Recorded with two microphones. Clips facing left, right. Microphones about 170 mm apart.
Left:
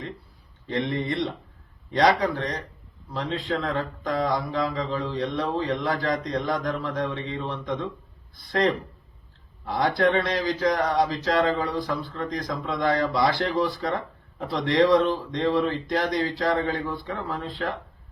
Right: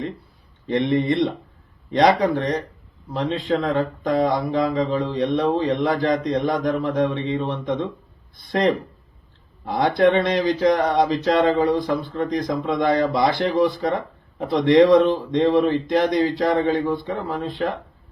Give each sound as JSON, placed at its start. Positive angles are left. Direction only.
{"t": 0.7, "sound": "speech", "side_deg": -20}
{"t": 9.6, "sound": "speech", "side_deg": -20}